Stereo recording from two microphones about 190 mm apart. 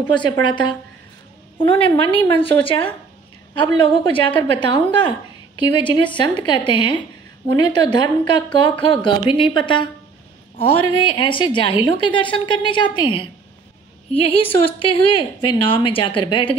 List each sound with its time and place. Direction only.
0.1 s a woman's voice: 25° left (ahead or behind)
10.9 s a woman's voice: 25° left (ahead or behind)